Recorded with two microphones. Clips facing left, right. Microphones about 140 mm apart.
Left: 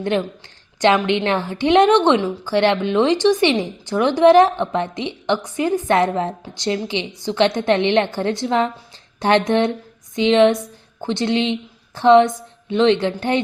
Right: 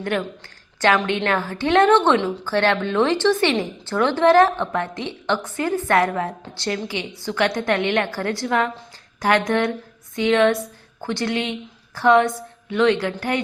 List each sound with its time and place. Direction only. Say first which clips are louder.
0.0 s a woman's voice: left 4 dB; 20° left (ahead or behind)